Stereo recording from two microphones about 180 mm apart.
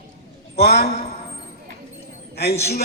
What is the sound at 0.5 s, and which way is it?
Speech, 60° left (ahead or behind).